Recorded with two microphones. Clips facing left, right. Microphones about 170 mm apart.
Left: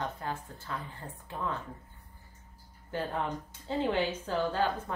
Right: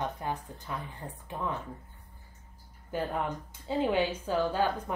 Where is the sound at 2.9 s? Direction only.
10° right (ahead or behind).